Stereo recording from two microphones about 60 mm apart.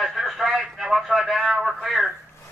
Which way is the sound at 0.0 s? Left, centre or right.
Centre.